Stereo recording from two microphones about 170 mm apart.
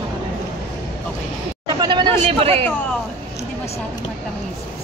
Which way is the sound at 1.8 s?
30° right (ahead or behind).